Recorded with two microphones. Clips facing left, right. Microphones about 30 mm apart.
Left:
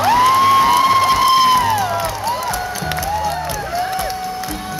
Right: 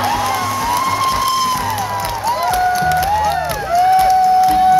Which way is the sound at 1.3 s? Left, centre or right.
Left.